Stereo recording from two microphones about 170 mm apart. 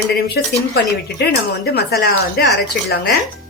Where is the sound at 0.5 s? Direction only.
70° left (ahead or behind).